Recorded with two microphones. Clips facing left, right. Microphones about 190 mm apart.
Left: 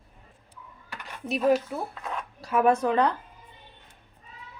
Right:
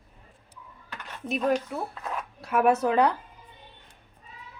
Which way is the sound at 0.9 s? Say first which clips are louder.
Even; 5° left (ahead or behind).